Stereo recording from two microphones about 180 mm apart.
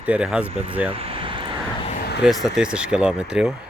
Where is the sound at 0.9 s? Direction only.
30° right (ahead or behind).